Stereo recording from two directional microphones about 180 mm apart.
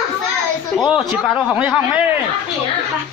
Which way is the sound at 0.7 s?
Centre (ahead or behind).